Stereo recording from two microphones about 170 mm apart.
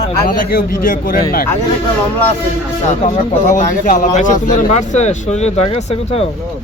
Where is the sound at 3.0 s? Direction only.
50° left (ahead or behind).